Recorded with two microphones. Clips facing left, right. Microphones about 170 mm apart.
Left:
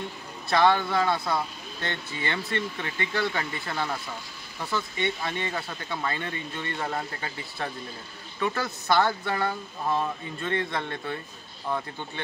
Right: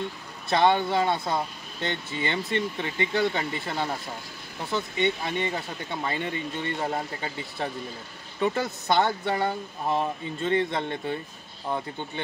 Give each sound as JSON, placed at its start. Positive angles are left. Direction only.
{"t": 0.5, "sound": "speech", "side_deg": -20}